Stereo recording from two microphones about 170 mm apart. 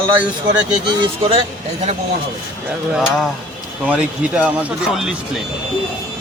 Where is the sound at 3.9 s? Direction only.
5° right (ahead or behind).